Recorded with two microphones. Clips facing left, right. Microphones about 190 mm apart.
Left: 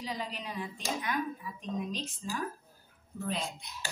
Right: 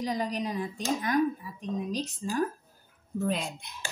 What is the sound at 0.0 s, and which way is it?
Speech, 45° right (ahead or behind).